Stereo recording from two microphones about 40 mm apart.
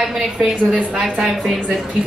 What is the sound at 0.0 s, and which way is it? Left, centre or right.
A woman's voice, centre.